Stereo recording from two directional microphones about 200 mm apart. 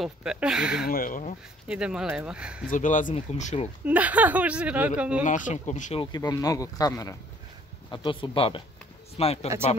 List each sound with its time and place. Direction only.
0.0 s speech: 5° right (ahead or behind)
0.8 s speech: 45° left (ahead or behind)
1.7 s speech: 5° right (ahead or behind)
2.6 s speech: 40° left (ahead or behind)
3.8 s speech: 5° right (ahead or behind)
5.2 s speech: 35° left (ahead or behind)
6.1 s speech: 20° left (ahead or behind)